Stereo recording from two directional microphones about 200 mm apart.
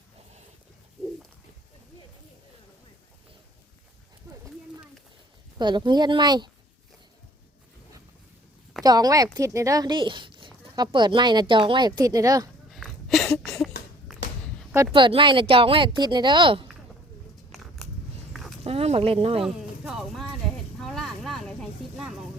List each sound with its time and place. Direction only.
5.5 s speech: 20° right (ahead or behind)
8.8 s speech: 20° right (ahead or behind)
12.7 s a sound: centre (ahead or behind)
14.9 s speech: 25° right (ahead or behind)
17.5 s biting: centre (ahead or behind)
18.6 s speech: 30° right (ahead or behind)
19.8 s a sound: 5° right (ahead or behind)
20.8 s vehicle: centre (ahead or behind)